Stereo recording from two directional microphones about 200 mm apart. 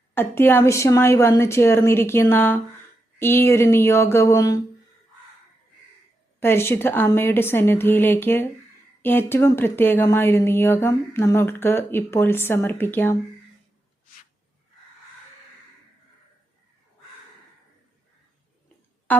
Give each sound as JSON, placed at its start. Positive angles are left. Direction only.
{"t": 0.1, "sound": "speech", "side_deg": 10}
{"t": 6.4, "sound": "speech", "side_deg": 10}
{"t": 19.1, "sound": "music", "side_deg": 10}